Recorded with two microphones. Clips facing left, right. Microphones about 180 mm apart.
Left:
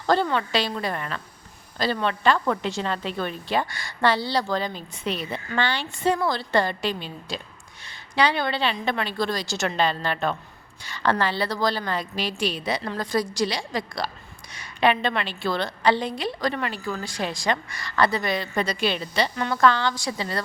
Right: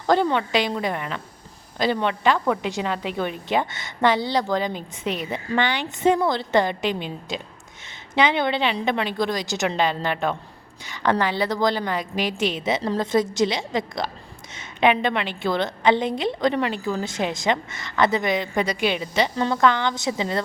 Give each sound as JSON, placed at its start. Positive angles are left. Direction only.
{"t": 0.1, "sound": "a woman's voice", "side_deg": -15}